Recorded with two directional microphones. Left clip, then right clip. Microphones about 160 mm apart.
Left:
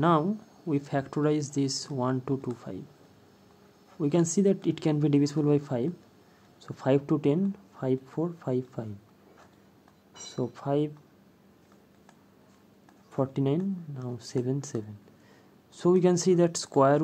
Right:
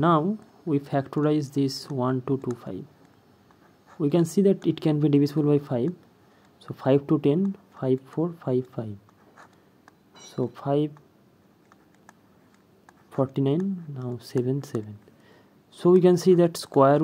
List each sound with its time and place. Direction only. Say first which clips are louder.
0.0 s speech: right 3 dB; 25° right (ahead or behind)
4.0 s speech: right 3 dB; 25° right (ahead or behind)
10.3 s speech: right 4 dB; 25° right (ahead or behind)
13.1 s speech: right 3 dB; 25° right (ahead or behind)